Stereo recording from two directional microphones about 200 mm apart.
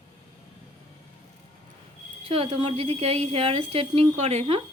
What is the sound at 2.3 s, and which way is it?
A woman's voice, 30° right (ahead or behind).